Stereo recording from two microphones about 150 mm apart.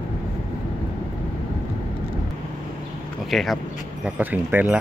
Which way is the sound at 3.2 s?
Centre (ahead or behind).